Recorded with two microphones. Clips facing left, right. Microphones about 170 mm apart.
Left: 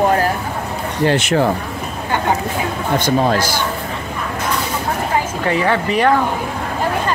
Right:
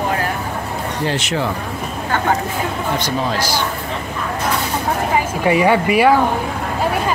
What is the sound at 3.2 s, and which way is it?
Speech, 50° left (ahead or behind).